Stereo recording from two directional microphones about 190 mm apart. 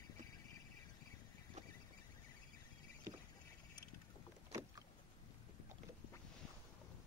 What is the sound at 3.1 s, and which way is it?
Rowboat, 15° right (ahead or behind).